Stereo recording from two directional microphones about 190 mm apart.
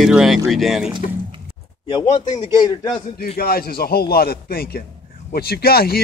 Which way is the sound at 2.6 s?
20° left (ahead or behind).